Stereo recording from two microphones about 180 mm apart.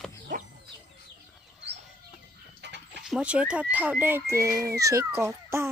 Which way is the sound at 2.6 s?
75° right (ahead or behind).